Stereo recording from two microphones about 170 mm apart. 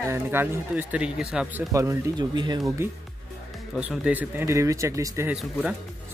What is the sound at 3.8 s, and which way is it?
Speech, 10° right (ahead or behind).